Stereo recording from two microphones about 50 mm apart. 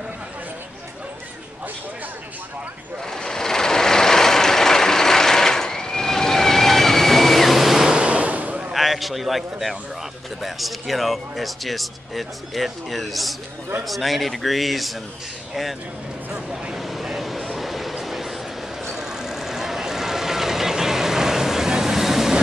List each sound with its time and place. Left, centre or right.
3.1 s vehicle: centre
7.9 s waves: right
8.7 s a man's voice: centre
16.7 s a sound: centre
17.6 s train: centre
18.9 s vehicle: centre